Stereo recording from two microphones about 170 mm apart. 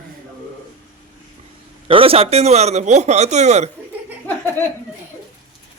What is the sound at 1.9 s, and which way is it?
A man's voice, 35° right (ahead or behind).